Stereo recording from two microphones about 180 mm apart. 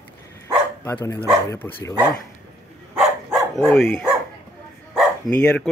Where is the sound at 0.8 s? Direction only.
15° left (ahead or behind).